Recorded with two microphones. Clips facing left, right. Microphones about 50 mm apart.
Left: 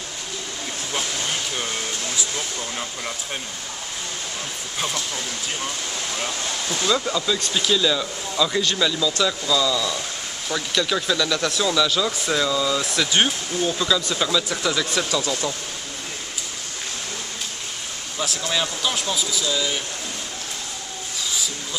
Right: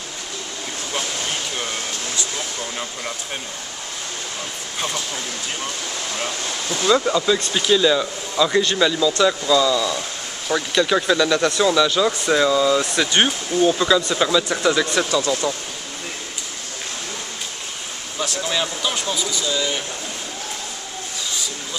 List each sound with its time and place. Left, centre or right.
2.1 s speech: centre
4.7 s speech: centre
18.4 s speech: centre